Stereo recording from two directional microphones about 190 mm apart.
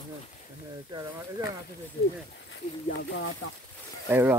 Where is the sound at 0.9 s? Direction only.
20° right (ahead or behind).